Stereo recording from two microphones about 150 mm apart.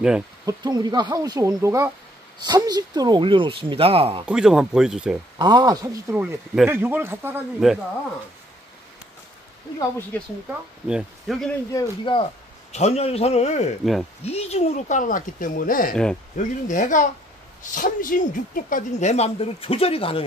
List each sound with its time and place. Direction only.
0.5 s speech: 25° right (ahead or behind)
4.3 s speech: 5° right (ahead or behind)
5.4 s a man's voice: 30° right (ahead or behind)
7.6 s speech: 5° right (ahead or behind)
9.8 s speech: 15° left (ahead or behind)
10.9 s speech: 5° right (ahead or behind)
11.7 s speech: 35° left (ahead or behind)
12.7 s speech: 45° left (ahead or behind); by 15.9 s 70° left (ahead or behind)
15.9 s speech: 5° left (ahead or behind)
16.3 s speech: 55° left (ahead or behind); by 20.2 s 40° left (ahead or behind)